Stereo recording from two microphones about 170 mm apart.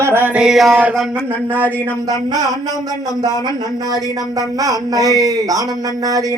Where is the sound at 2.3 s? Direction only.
20° right (ahead or behind).